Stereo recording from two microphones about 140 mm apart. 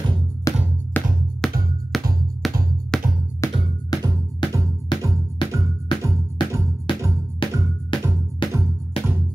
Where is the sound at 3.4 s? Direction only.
20° left (ahead or behind).